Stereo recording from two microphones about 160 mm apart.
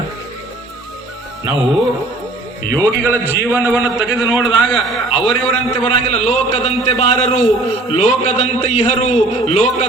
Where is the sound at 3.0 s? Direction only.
15° right (ahead or behind).